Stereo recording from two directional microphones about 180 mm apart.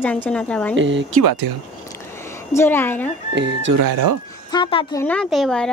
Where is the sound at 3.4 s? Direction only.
80° right.